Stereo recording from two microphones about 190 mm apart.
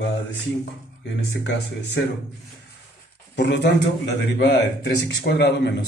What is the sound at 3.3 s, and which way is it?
Speech, 60° left (ahead or behind).